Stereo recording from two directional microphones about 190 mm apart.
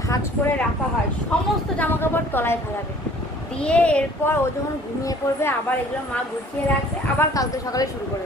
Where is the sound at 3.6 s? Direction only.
5° left (ahead or behind).